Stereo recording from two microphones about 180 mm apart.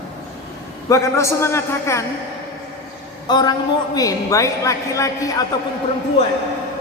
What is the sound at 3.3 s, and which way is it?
A man's voice, 25° left (ahead or behind).